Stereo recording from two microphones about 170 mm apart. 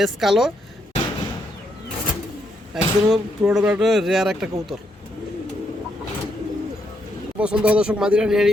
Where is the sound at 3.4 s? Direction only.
5° right (ahead or behind).